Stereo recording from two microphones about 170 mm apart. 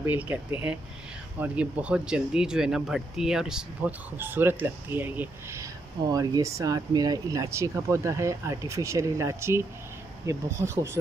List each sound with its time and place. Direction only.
0.0 s speech: 10° right (ahead or behind)